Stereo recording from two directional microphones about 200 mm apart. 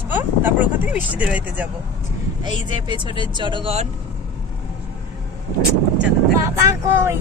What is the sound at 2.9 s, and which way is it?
Speech, 25° right (ahead or behind).